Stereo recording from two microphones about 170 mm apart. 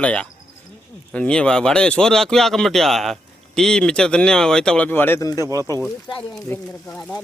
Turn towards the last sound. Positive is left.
turn(degrees=5)  # may be behind; listen again after turning